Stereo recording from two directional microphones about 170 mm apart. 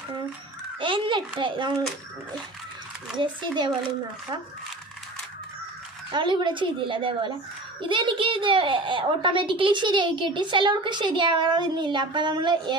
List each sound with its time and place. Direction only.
0.7 s a child's voice: 30° right (ahead or behind)
3.2 s a child's voice: 25° right (ahead or behind)
6.1 s a child's voice: 30° right (ahead or behind)